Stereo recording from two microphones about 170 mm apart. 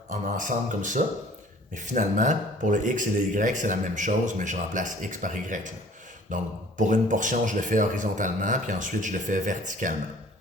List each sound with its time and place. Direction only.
0.1 s speech: 50° right (ahead or behind)